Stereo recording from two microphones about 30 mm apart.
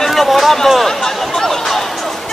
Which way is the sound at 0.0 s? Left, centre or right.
Centre.